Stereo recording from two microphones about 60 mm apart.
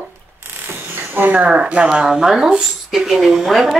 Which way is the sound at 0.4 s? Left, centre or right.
Right.